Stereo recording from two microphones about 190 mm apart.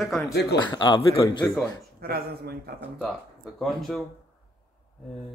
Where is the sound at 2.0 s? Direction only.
55° right (ahead or behind).